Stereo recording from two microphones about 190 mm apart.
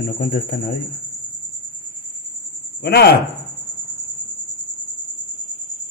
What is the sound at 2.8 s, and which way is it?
Speech, 60° left (ahead or behind).